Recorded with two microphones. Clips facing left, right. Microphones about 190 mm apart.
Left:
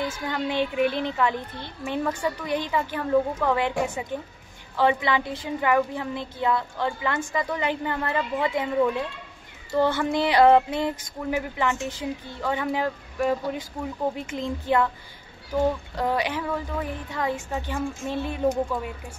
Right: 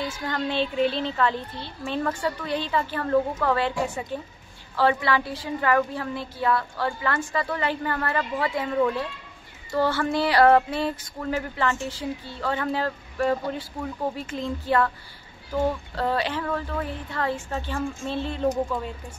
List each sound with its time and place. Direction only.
0.3 s a woman's voice: 15° left (ahead or behind)
15.9 s a woman's voice: 15° left (ahead or behind)